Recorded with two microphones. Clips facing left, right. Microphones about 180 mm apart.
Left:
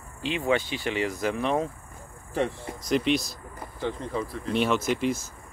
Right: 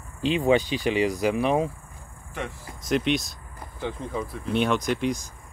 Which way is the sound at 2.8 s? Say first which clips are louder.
Even; centre (ahead or behind).